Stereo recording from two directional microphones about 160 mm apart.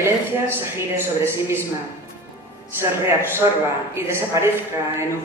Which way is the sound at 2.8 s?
15° right (ahead or behind).